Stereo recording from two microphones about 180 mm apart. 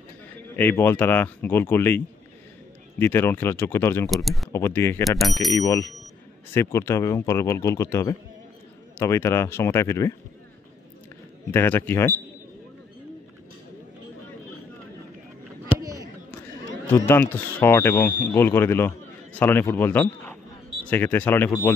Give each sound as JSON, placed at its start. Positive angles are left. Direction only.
{"t": 0.6, "sound": "speech", "side_deg": 10}
{"t": 4.1, "sound": "speech", "side_deg": 0}
{"t": 4.5, "sound": "speech", "side_deg": 15}
{"t": 5.2, "sound": "speech", "side_deg": 0}
{"t": 5.5, "sound": "speech", "side_deg": 20}
{"t": 11.5, "sound": "speech", "side_deg": 10}
{"t": 15.8, "sound": "a sound", "side_deg": -20}
{"t": 16.9, "sound": "speech", "side_deg": 10}